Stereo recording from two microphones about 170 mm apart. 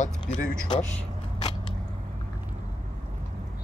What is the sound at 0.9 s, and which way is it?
Vehicle, 30° left (ahead or behind).